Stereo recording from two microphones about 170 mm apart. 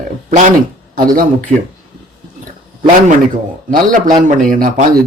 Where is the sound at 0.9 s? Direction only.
55° right (ahead or behind).